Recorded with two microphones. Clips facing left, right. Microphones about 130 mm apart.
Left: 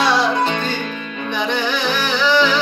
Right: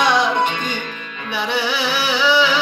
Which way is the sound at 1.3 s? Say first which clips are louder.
Even; 10° right (ahead or behind).